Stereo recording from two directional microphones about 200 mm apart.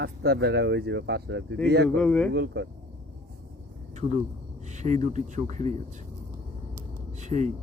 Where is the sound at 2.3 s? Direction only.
60° right (ahead or behind).